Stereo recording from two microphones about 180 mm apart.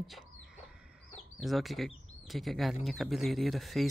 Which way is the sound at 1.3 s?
Centre (ahead or behind).